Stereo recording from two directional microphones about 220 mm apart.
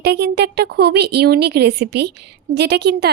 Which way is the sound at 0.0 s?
50° right (ahead or behind).